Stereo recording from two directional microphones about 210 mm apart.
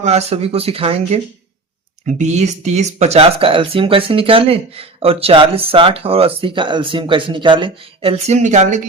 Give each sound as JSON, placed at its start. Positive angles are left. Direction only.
{"t": 0.0, "sound": "speech", "side_deg": -30}